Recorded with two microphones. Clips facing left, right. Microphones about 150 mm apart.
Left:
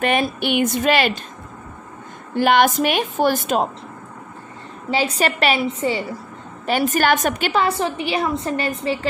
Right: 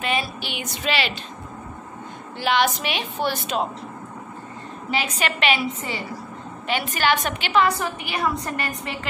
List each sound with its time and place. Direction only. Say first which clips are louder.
0.0 s a woman's voice: left 7 dB; 55° left (ahead or behind)
2.3 s a woman's voice: left 6 dB; 50° left (ahead or behind)
4.9 s a woman's voice: left 6 dB; 35° left (ahead or behind)
6.7 s a woman's voice: left 5 dB; 45° left (ahead or behind)
7.6 s a woman's voice: left 3 dB; 30° left (ahead or behind)